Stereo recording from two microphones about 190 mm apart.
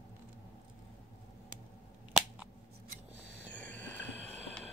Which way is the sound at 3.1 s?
60° left (ahead or behind).